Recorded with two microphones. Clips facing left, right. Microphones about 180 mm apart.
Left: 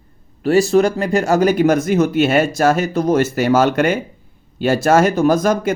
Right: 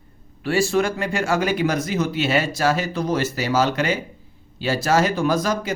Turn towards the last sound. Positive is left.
turn(degrees=50)  # may be behind; listen again after turning